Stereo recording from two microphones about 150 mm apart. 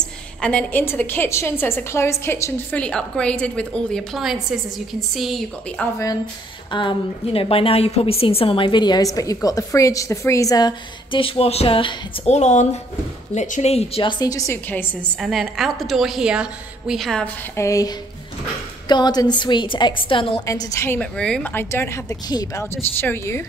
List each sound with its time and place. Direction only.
0.0 s a woman's voice: 5° left (ahead or behind)
2.8 s a woman's voice: 5° left (ahead or behind)
6.7 s a woman's voice: 35° left (ahead or behind); by 14.9 s 15° left (ahead or behind)
15.1 s a woman's voice: centre (ahead or behind)
17.6 s a woman's voice: 20° left (ahead or behind)
20.4 s a woman's voice: 20° left (ahead or behind)
21.0 s a woman's voice: 5° left (ahead or behind)
22.3 s a woman's voice: 25° left (ahead or behind)
22.8 s a woman's voice: 15° left (ahead or behind)